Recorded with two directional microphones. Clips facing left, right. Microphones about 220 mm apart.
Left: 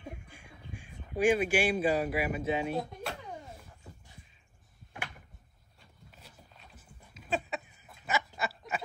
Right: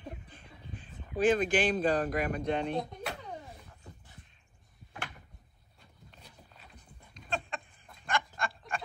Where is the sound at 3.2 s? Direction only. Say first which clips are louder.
Even; 5° left (ahead or behind).